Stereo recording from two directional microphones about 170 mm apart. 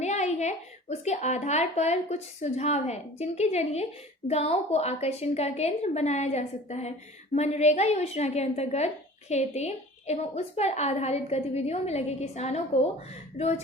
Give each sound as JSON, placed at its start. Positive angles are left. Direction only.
{"t": 0.0, "sound": "a woman's voice", "side_deg": 40}